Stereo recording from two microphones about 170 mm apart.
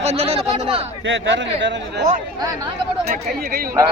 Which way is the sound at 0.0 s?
40° right (ahead or behind).